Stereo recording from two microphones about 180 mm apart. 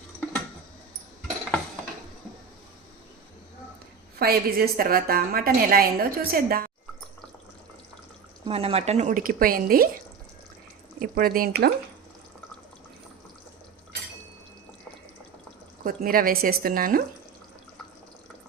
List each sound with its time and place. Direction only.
4.2 s a woman's voice: 60° right (ahead or behind)
8.4 s speech: 35° right (ahead or behind); by 9.9 s 55° right (ahead or behind)
11.0 s a woman's voice: 55° right (ahead or behind)
15.8 s speech: 55° right (ahead or behind)